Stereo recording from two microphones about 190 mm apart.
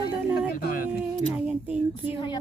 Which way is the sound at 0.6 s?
55° left (ahead or behind).